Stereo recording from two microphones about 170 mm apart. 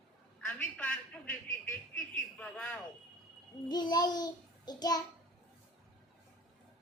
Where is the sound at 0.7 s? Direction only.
10° left (ahead or behind).